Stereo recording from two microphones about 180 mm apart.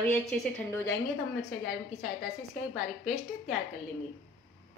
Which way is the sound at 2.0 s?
Centre (ahead or behind).